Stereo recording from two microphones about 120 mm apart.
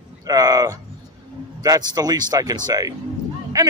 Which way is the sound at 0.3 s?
30° right (ahead or behind).